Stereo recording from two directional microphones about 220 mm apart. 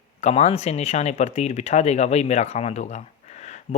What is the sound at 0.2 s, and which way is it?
Speech, 30° left (ahead or behind).